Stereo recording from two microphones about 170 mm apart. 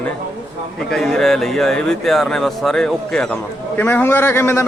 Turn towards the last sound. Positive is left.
turn(degrees=15)  # may be behind; listen again after turning